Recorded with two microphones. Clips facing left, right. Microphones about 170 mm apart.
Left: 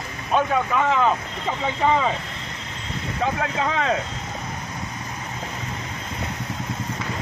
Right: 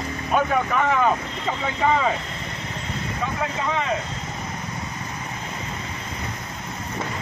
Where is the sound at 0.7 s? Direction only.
20° left (ahead or behind).